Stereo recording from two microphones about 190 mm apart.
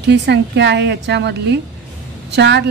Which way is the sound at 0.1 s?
65° right (ahead or behind).